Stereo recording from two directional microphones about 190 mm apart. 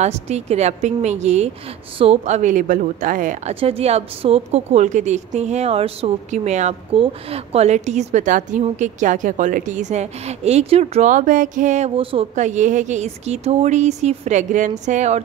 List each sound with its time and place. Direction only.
0.0 s a woman's voice: 35° right (ahead or behind)
3.5 s a woman's voice: 30° right (ahead or behind)